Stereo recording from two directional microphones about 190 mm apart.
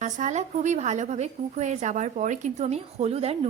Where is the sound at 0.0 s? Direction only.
40° right (ahead or behind).